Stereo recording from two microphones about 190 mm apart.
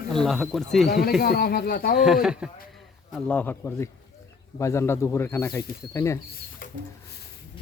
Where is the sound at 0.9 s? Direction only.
55° left (ahead or behind).